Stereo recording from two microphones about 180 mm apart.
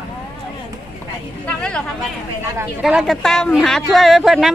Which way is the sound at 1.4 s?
5° left (ahead or behind).